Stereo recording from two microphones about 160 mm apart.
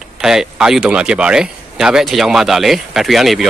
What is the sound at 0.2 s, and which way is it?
Speech, 5° right (ahead or behind).